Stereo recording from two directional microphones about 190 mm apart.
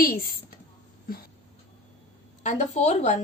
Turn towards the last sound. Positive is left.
turn(degrees=35)  # may be behind; listen again after turning